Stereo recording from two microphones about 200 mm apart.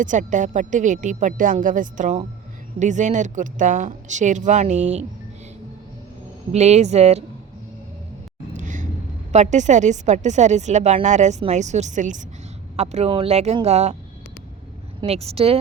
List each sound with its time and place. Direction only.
0.0 s speech: 40° right (ahead or behind)
6.5 s speech: 35° right (ahead or behind)
8.5 s a sound: 40° right (ahead or behind)
9.3 s speech: 35° right (ahead or behind)
15.0 s speech: 30° right (ahead or behind)